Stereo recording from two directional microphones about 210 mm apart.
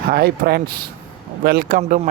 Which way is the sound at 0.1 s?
45° right (ahead or behind).